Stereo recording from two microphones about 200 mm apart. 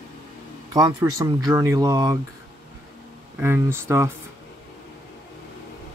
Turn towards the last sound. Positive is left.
turn(degrees=-15)  # may be behind; listen again after turning